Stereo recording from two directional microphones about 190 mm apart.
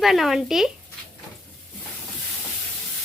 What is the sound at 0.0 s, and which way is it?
Speech, centre (ahead or behind).